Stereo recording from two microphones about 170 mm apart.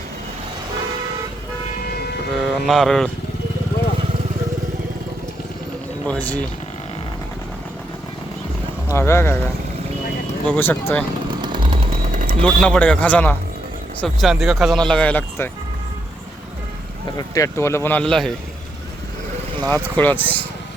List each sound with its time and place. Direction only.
2.3 s speech: centre (ahead or behind)
6.1 s speech: 10° left (ahead or behind)
8.9 s speech: 15° left (ahead or behind)
10.4 s speech: 10° left (ahead or behind)
11.4 s jackhammer: 30° right (ahead or behind)
12.1 s a sound: 55° right (ahead or behind)
12.4 s speech: 5° left (ahead or behind)
17.2 s speech: 20° left (ahead or behind); by 18.3 s 5° left (ahead or behind)
19.5 s speech: 20° right (ahead or behind)
20.0 s speech: 10° left (ahead or behind)